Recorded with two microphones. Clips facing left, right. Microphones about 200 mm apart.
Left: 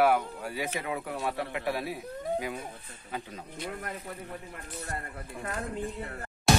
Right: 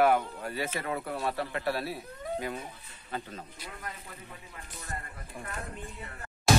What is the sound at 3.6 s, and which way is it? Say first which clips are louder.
Speech: left 6 dB; 55° left (ahead or behind).